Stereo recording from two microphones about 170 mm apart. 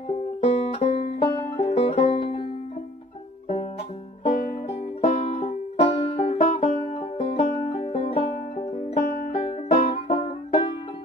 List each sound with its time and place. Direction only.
0.1 s music: 35° left (ahead or behind)
4.2 s music: 35° left (ahead or behind)
9.0 s music: 65° left (ahead or behind)
9.3 s music: 40° left (ahead or behind)